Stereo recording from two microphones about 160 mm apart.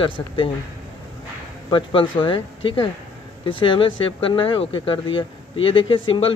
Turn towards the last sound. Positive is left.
turn(degrees=35)  # may be behind; listen again after turning